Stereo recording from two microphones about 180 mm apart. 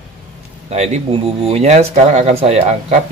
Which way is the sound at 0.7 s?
40° right (ahead or behind).